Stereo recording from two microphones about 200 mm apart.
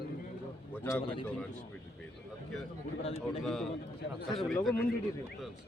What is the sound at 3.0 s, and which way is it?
Speech, 30° left (ahead or behind).